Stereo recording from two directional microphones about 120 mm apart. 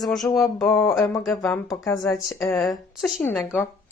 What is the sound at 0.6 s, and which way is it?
Speech, 25° left (ahead or behind).